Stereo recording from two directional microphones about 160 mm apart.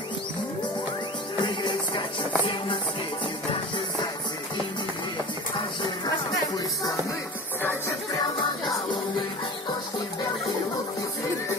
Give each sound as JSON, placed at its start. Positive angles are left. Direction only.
{"t": 1.4, "sound": "music", "side_deg": 30}
{"t": 5.8, "sound": "music", "side_deg": 25}